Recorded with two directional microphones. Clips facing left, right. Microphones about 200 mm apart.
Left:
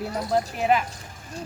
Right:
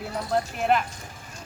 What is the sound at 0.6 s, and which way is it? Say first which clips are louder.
Speech: left 1 dB; centre (ahead or behind).